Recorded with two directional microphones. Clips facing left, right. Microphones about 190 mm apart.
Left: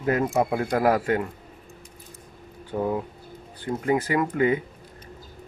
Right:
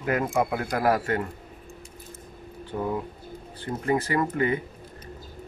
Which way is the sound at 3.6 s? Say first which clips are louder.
Left 2 dB; 15° left (ahead or behind).